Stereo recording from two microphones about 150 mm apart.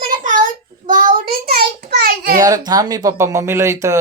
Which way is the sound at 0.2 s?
60° right (ahead or behind).